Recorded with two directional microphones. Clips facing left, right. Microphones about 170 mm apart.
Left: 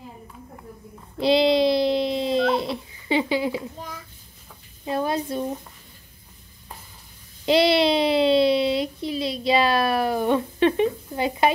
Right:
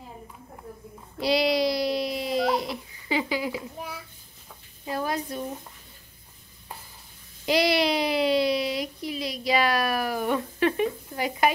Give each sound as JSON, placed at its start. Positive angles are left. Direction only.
{"t": 1.2, "sound": "dog", "side_deg": 25}
{"t": 3.7, "sound": "a child's voice", "side_deg": -10}
{"t": 4.8, "sound": "a child's voice", "side_deg": 25}
{"t": 7.4, "sound": "a child's voice", "side_deg": 25}